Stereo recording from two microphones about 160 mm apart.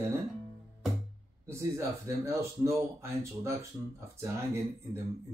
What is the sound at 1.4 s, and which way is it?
Speech, 20° right (ahead or behind).